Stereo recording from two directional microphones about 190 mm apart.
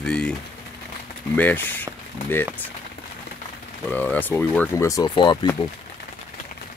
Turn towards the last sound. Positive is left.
turn(degrees=25)  # may be behind; listen again after turning